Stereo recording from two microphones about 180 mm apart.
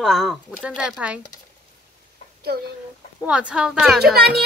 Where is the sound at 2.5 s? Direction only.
60° right (ahead or behind).